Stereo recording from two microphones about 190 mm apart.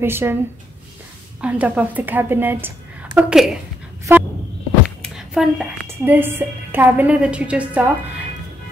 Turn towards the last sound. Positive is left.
turn(degrees=-10)  # may be behind; listen again after turning